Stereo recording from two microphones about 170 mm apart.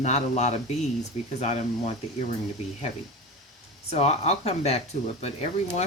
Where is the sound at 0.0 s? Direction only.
40° left (ahead or behind).